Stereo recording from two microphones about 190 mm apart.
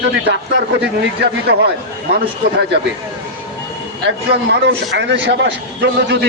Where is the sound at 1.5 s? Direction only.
55° right (ahead or behind).